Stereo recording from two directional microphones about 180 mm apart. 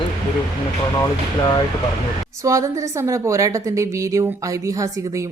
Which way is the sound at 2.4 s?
15° right (ahead or behind).